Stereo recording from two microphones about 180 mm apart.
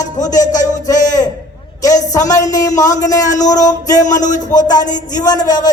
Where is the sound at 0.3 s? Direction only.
45° left (ahead or behind).